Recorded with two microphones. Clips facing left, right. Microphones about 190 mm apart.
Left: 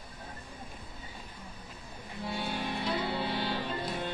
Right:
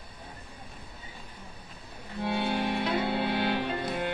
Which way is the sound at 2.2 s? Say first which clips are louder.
Right 6 dB; 65° right (ahead or behind).